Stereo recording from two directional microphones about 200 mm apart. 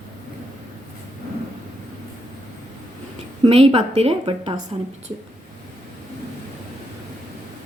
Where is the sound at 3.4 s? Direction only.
30° right (ahead or behind).